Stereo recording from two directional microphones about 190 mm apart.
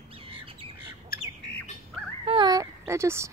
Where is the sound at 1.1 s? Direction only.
50° left (ahead or behind).